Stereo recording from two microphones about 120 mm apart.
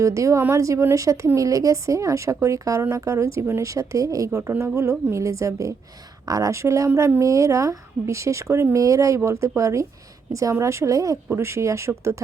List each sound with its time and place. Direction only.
0.0 s speech: 25° right (ahead or behind)